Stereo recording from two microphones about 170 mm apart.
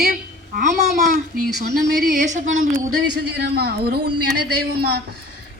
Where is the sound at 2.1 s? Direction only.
65° right (ahead or behind).